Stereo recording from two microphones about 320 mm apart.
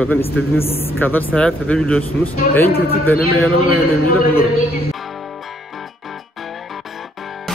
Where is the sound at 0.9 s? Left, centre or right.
Centre.